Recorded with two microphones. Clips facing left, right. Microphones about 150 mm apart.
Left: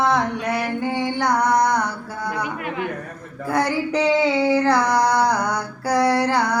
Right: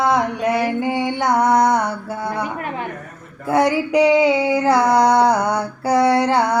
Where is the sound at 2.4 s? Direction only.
35° right (ahead or behind).